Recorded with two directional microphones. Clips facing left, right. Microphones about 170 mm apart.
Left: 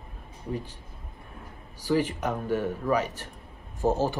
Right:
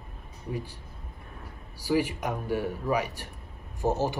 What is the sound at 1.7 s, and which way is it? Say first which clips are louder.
Speech: left 1 dB; 10° right (ahead or behind).